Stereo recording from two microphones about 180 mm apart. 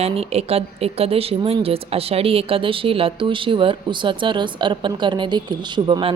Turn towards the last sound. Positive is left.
turn(degrees=-30)  # may be behind; listen again after turning